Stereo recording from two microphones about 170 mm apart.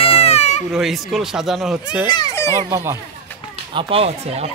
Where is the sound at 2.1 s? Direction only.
25° left (ahead or behind).